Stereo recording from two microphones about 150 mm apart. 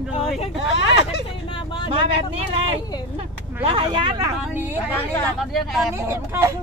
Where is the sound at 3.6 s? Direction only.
35° right (ahead or behind).